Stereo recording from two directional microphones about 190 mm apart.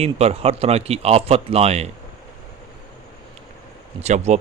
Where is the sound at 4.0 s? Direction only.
35° right (ahead or behind).